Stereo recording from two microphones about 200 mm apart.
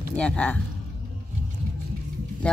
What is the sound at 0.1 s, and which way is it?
Speech, 5° left (ahead or behind).